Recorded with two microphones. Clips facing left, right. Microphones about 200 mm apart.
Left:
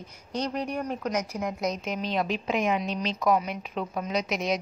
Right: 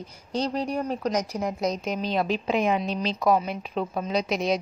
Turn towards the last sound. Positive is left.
turn(degrees=-30)  # may be behind; listen again after turning